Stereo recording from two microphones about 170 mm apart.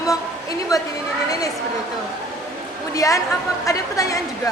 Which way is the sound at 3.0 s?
20° left (ahead or behind).